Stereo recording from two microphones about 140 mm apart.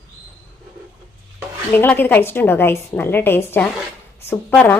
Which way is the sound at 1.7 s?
15° left (ahead or behind).